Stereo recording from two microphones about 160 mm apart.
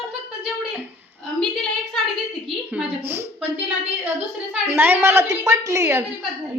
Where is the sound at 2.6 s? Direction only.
10° right (ahead or behind).